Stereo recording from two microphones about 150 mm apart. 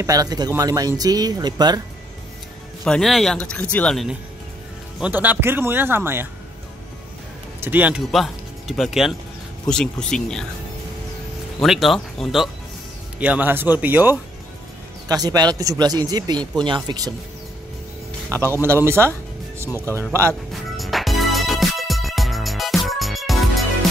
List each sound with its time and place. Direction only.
0.0 s speech: 25° right (ahead or behind)
2.8 s speech: 5° left (ahead or behind)
5.0 s speech: 10° right (ahead or behind)
7.6 s speech: 10° right (ahead or behind)
8.1 s speech: centre (ahead or behind)
11.6 s speech: centre (ahead or behind)
15.0 s speech: 25° right (ahead or behind)
18.3 s speech: 20° right (ahead or behind)
19.7 s speech: 15° left (ahead or behind)
20.1 s speech: 20° right (ahead or behind)
20.5 s music: centre (ahead or behind)